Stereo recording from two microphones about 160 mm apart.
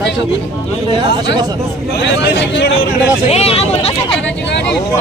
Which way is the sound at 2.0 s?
90° left.